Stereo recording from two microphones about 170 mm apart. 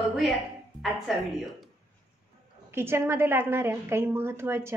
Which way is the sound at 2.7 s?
15° right (ahead or behind).